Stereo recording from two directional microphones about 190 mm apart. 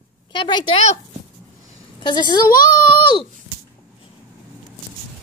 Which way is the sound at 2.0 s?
25° left (ahead or behind).